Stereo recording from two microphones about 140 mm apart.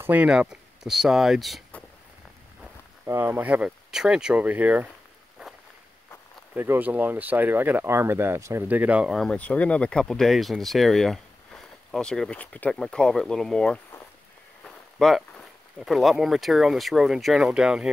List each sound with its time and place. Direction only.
0.0 s speech: 10° right (ahead or behind)
3.1 s speech: 15° right (ahead or behind)
6.5 s speech: 15° right (ahead or behind)
9.1 s speech: 5° left (ahead or behind)
15.0 s speech: centre (ahead or behind)